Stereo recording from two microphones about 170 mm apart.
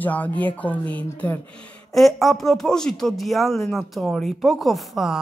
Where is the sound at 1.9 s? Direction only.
Centre (ahead or behind).